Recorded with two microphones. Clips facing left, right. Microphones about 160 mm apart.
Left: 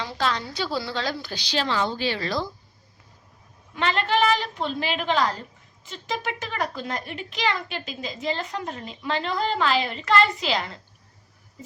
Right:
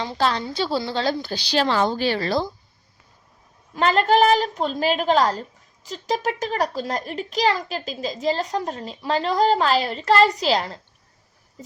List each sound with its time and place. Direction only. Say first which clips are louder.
0.0 s a woman's voice: right 4 dB; 35° right (ahead or behind)
1.6 s speech: right 4 dB; 45° right (ahead or behind)
3.8 s a woman's voice: right 6 dB; 40° right (ahead or behind)